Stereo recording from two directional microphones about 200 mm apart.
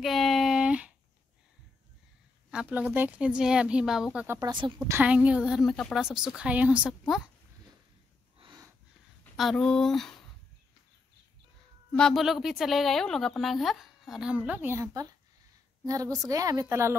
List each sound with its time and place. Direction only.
0.0 s a sound: centre (ahead or behind)
2.5 s a woman's voice: 5° right (ahead or behind)
4.5 s a woman's voice: 25° right (ahead or behind)
4.7 s a woman's voice: 10° right (ahead or behind)
8.4 s snort: 20° right (ahead or behind)
9.2 s speech: centre (ahead or behind)
12.0 s a woman's voice: centre (ahead or behind)